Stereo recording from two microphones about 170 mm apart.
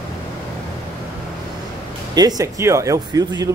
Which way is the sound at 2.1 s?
20° right (ahead or behind).